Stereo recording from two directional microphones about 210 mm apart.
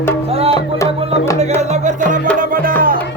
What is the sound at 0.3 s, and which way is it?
Music, 30° right (ahead or behind).